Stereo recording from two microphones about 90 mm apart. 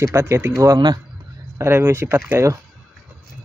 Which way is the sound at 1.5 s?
30° right (ahead or behind).